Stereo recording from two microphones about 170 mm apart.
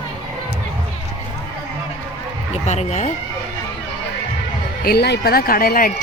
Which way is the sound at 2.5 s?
40° left (ahead or behind).